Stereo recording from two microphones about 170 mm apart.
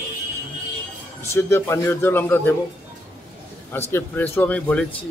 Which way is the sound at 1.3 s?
15° left (ahead or behind).